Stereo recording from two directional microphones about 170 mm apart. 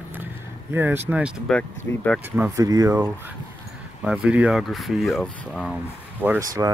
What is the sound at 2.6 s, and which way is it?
Speech, 20° right (ahead or behind).